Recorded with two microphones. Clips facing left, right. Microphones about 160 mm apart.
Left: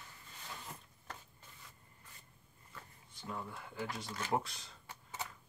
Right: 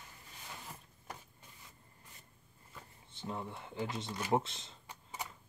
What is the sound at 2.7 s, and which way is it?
Speech, 25° right (ahead or behind).